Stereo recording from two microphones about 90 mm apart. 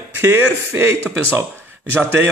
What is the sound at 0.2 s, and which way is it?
Speech, 25° right (ahead or behind).